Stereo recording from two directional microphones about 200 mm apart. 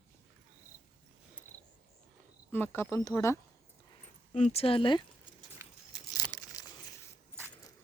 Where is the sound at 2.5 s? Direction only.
10° left (ahead or behind).